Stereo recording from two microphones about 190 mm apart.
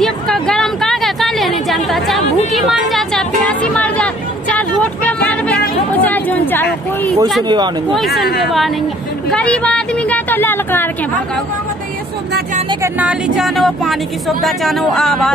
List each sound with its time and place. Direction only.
0.0 s a sound: centre (ahead or behind)
7.4 s speech: 25° right (ahead or behind)
8.4 s a woman's voice: centre (ahead or behind)
12.8 s speech: 5° right (ahead or behind)